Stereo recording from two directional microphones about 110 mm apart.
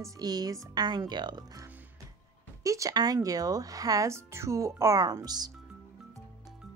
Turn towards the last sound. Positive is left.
turn(degrees=-40)  # may be behind; listen again after turning